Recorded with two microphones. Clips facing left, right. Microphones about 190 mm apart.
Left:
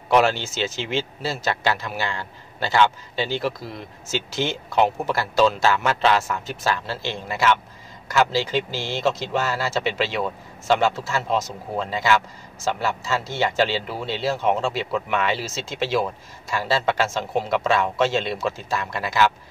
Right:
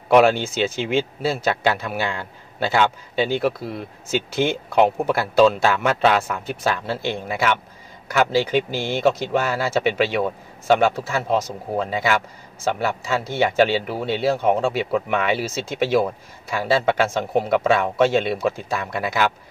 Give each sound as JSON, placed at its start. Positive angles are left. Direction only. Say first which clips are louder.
{"t": 0.1, "sound": "speech", "louder": "right 4 dB", "side_deg": -55}